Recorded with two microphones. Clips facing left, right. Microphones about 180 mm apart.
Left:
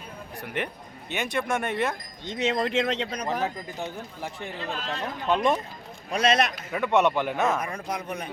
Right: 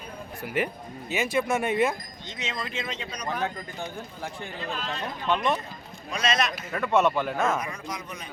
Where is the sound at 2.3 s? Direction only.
60° left (ahead or behind).